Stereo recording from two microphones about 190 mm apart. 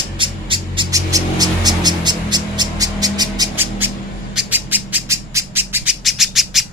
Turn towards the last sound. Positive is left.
turn(degrees=0)  # may be behind; listen again after turning